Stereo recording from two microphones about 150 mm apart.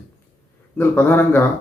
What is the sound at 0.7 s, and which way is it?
Speech, 15° left (ahead or behind).